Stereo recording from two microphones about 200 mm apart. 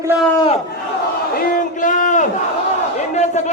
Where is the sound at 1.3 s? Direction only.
50° left (ahead or behind).